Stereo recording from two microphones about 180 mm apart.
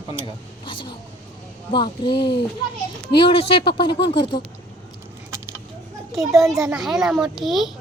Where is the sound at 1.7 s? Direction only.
25° left (ahead or behind).